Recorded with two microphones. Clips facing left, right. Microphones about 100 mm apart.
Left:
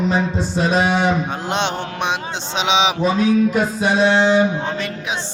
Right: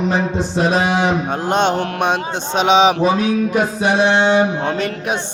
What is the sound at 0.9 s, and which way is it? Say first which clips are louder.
Speech: right 1 dB; 5° right (ahead or behind).